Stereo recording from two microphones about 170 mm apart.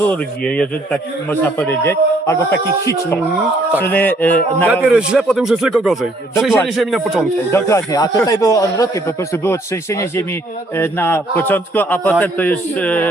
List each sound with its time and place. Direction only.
0.0 s a man's voice: 10° left (ahead or behind)
4.7 s a man's voice: 5° right (ahead or behind)
7.5 s a man's voice: 15° left (ahead or behind)